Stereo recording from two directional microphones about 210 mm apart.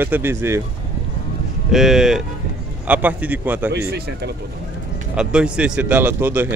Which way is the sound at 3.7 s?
50° right (ahead or behind).